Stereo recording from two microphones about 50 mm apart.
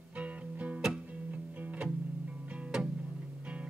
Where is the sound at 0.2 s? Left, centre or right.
Right.